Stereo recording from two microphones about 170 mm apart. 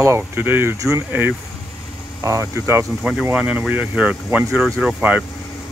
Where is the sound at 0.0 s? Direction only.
15° right (ahead or behind).